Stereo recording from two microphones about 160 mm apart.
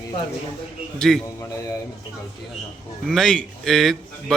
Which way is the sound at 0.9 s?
Centre (ahead or behind).